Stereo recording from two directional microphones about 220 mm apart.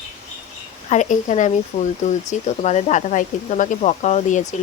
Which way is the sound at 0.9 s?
30° left (ahead or behind).